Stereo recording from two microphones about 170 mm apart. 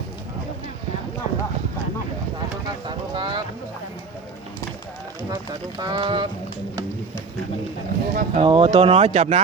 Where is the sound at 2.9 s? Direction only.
25° right (ahead or behind).